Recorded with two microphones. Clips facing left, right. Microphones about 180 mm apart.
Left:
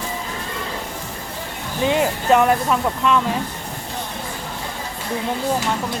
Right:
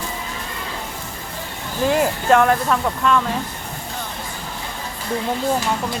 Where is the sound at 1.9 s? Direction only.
Centre (ahead or behind).